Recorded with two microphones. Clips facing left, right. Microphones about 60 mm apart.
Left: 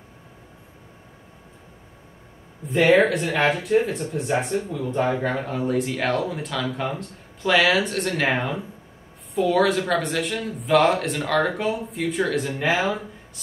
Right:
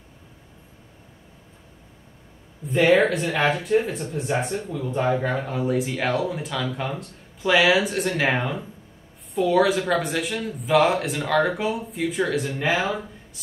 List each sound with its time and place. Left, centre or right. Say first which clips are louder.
2.6 s speech: left 1 dB; centre